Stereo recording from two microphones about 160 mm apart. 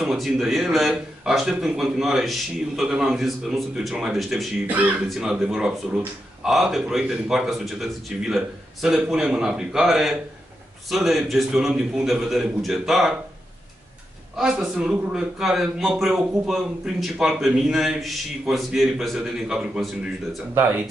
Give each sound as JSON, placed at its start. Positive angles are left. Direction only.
{"t": 0.0, "sound": "speech", "side_deg": 0}
{"t": 14.3, "sound": "speech", "side_deg": -5}